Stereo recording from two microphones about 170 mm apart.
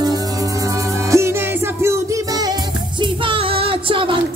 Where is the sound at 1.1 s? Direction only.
15° right (ahead or behind).